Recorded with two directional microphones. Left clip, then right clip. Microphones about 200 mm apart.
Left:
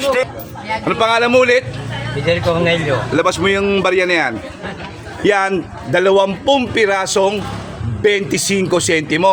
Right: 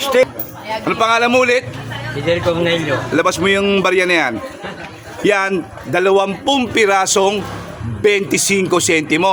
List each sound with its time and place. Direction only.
0.0 s speech: 35° right (ahead or behind)
0.9 s a man's voice: centre (ahead or behind)
3.2 s a man's voice: 10° right (ahead or behind)